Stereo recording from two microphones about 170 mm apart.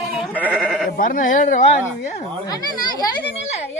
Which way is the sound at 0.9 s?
55° left (ahead or behind).